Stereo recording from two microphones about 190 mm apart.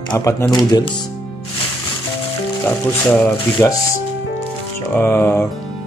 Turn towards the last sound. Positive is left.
turn(degrees=10)  # may be behind; listen again after turning